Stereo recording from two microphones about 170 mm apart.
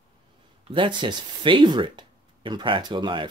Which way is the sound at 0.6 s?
30° right (ahead or behind).